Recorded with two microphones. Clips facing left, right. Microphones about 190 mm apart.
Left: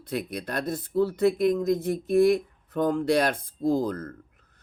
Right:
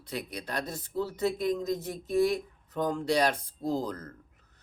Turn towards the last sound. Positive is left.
turn(degrees=55)  # may be behind; listen again after turning